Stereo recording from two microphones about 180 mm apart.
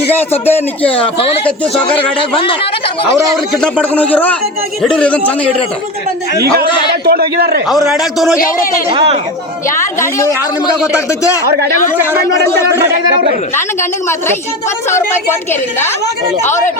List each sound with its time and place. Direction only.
0.1 s speech: 10° left (ahead or behind)
3.5 s speech: 5° left (ahead or behind)
6.7 s a man's voice: 25° left (ahead or behind)
7.0 s a man's voice: 60° right (ahead or behind)
7.9 s a man's voice: centre (ahead or behind)
8.9 s speech: 25° right (ahead or behind)
9.6 s speech: 15° left (ahead or behind)
14.8 s speech: 15° left (ahead or behind)